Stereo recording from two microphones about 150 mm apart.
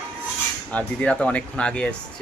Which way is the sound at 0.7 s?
10° left (ahead or behind).